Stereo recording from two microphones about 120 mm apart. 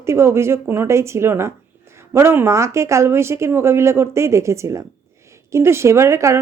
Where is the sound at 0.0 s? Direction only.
25° right (ahead or behind).